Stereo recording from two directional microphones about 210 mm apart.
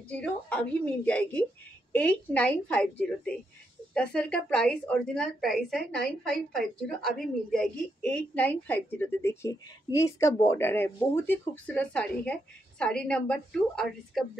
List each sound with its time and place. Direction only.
0.1 s a woman's voice: 5° left (ahead or behind)